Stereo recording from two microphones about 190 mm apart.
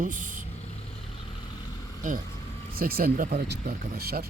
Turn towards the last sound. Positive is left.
turn(degrees=-55)  # may be behind; listen again after turning